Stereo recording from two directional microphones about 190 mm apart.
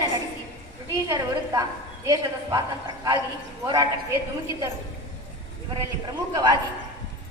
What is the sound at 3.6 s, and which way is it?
Speech, 20° right (ahead or behind).